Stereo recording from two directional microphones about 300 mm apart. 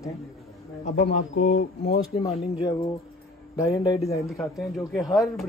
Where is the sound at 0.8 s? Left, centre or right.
Left.